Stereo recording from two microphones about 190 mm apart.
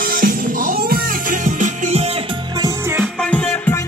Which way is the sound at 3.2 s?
5° left (ahead or behind).